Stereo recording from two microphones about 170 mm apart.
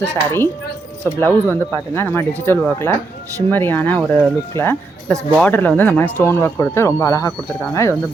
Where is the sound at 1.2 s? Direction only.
10° left (ahead or behind).